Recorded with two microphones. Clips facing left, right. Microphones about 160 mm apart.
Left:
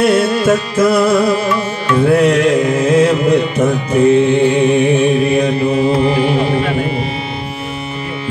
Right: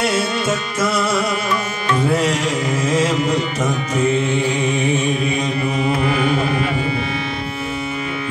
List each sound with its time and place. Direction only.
0.0 s music: 60° left (ahead or behind)
2.1 s music: 60° left (ahead or behind)
5.9 s music: 30° left (ahead or behind)